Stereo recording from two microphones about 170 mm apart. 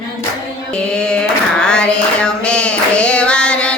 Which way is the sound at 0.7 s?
5° left (ahead or behind).